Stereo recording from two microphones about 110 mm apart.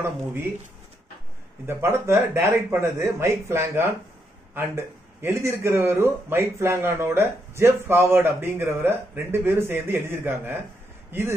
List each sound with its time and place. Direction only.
1.7 s speech: 25° right (ahead or behind)